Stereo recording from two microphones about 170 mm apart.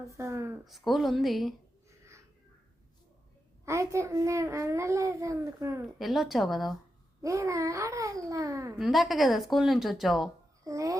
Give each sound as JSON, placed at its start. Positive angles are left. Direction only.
{"t": 0.0, "sound": "a child's voice", "side_deg": -15}
{"t": 0.6, "sound": "speech", "side_deg": 0}
{"t": 3.7, "sound": "a child's voice", "side_deg": -15}
{"t": 6.0, "sound": "speech", "side_deg": 0}
{"t": 7.2, "sound": "a child's voice", "side_deg": -20}
{"t": 8.8, "sound": "speech", "side_deg": 0}
{"t": 10.6, "sound": "speech", "side_deg": -20}